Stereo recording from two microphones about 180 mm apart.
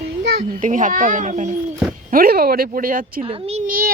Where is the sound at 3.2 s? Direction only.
30° right (ahead or behind).